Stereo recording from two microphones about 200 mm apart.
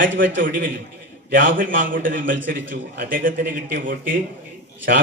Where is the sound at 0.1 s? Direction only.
65° right (ahead or behind).